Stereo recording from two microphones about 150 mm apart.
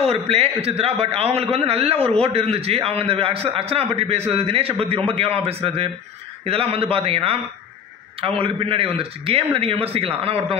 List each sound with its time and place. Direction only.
0.0 s a man's voice: 40° right (ahead or behind)